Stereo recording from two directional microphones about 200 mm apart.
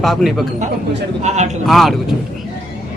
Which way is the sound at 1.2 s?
35° right (ahead or behind).